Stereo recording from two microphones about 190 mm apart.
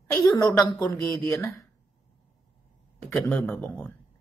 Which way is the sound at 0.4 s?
20° left (ahead or behind).